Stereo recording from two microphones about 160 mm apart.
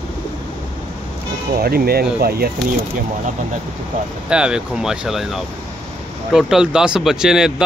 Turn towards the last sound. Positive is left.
turn(degrees=-5)  # may be behind; listen again after turning